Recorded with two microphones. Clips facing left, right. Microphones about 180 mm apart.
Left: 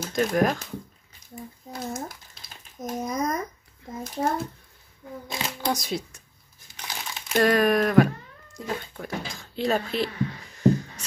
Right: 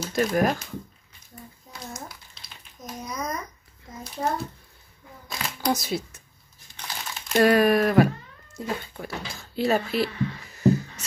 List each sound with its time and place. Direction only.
0.1 s speech: 5° right (ahead or behind)
1.8 s a sound: 50° left (ahead or behind)
4.0 s a child's voice: 50° left (ahead or behind)
5.3 s shuffling cards: 25° left (ahead or behind)
5.7 s speech: 5° right (ahead or behind)
7.4 s speech: 5° right (ahead or behind)